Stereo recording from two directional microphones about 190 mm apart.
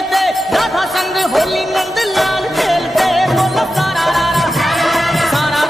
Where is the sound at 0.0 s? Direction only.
Centre (ahead or behind).